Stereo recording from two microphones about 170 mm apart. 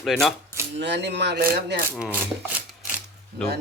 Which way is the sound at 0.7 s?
90° right.